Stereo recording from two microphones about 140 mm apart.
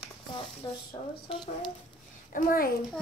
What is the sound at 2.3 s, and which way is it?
Speech, 90° left.